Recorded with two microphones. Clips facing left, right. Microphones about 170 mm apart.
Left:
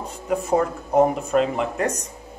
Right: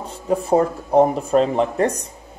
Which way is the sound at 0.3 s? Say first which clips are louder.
Right 4 dB; 30° right (ahead or behind).